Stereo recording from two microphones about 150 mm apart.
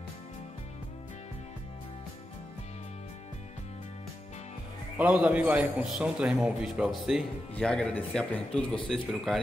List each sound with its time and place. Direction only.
4.9 s a man's voice: 10° right (ahead or behind)